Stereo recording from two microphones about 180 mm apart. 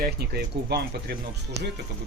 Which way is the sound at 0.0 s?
60° right (ahead or behind).